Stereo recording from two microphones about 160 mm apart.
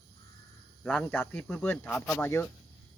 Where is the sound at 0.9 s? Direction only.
5° left (ahead or behind).